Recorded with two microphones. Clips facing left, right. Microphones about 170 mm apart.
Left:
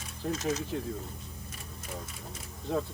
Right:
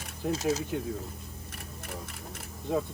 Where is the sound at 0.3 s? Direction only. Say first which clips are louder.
Right 3 dB; 35° right (ahead or behind).